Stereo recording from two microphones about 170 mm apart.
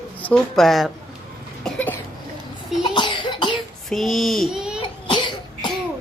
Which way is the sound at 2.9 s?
30° left (ahead or behind).